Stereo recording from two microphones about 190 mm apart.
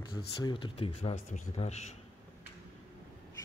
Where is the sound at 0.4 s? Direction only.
25° left (ahead or behind).